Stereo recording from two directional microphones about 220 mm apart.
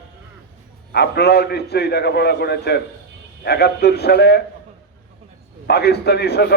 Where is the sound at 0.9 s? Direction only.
45° left (ahead or behind).